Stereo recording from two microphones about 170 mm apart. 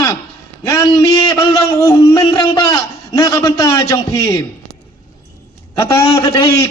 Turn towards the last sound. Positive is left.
turn(degrees=20)  # may be behind; listen again after turning